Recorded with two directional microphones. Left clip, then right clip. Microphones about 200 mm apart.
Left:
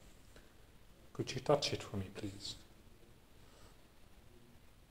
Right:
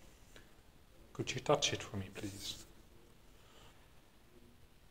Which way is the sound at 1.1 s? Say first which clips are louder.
Even; centre (ahead or behind).